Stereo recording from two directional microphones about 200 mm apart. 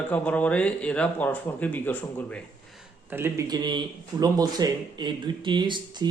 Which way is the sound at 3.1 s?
10° right (ahead or behind).